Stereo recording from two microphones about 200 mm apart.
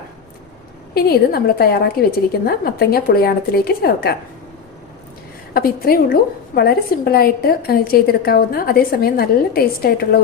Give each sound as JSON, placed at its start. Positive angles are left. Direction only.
{"t": 0.9, "sound": "a woman's voice", "side_deg": 50}
{"t": 5.5, "sound": "a woman's voice", "side_deg": 50}